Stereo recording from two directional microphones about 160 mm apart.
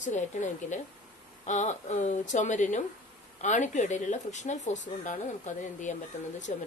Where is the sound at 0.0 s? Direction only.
50° left (ahead or behind).